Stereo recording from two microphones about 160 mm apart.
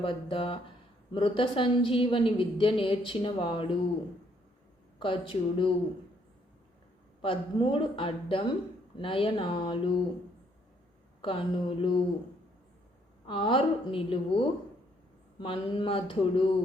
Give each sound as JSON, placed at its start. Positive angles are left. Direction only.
{"t": 0.0, "sound": "a woman's voice", "side_deg": 35}
{"t": 4.9, "sound": "a woman's voice", "side_deg": 35}
{"t": 7.2, "sound": "a woman's voice", "side_deg": 35}
{"t": 11.2, "sound": "a woman's voice", "side_deg": 35}
{"t": 13.2, "sound": "a woman's voice", "side_deg": 30}